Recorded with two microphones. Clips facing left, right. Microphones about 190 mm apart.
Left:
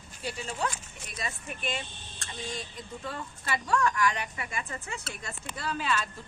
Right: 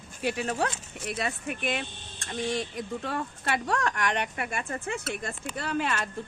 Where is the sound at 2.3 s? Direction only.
50° right (ahead or behind).